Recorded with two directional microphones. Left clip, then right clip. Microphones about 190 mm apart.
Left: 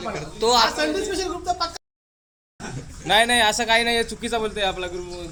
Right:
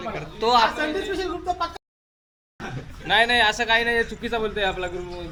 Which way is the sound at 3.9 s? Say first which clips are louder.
Left 1 dB; 40° left (ahead or behind).